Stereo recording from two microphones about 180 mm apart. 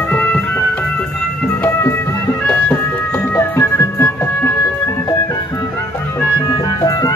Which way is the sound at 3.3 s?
15° left (ahead or behind).